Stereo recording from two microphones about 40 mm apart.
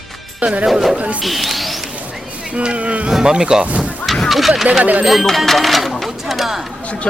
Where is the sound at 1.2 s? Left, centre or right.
Centre.